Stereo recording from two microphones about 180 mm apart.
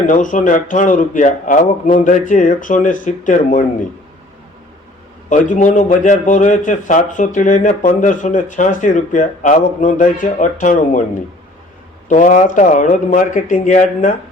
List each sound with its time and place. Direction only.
0.1 s speech: 45° left (ahead or behind)
5.3 s speech: 45° left (ahead or behind)
12.0 s speech: 45° left (ahead or behind)